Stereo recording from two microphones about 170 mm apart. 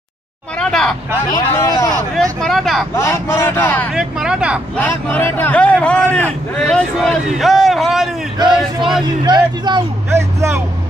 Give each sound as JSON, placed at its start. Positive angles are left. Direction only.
{"t": 0.6, "sound": "vehicle", "side_deg": 5}
{"t": 1.3, "sound": "speech", "side_deg": 20}
{"t": 2.4, "sound": "speech", "side_deg": 0}
{"t": 3.0, "sound": "a man's voice", "side_deg": 15}
{"t": 3.9, "sound": "speech", "side_deg": -5}
{"t": 4.7, "sound": "a man's voice", "side_deg": 10}
{"t": 9.0, "sound": "speech", "side_deg": -25}
{"t": 10.1, "sound": "speech", "side_deg": -15}